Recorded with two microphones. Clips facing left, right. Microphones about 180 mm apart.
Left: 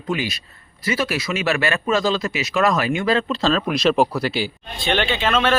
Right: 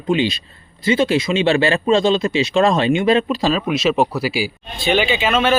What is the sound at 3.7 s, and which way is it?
Speech, 5° right (ahead or behind).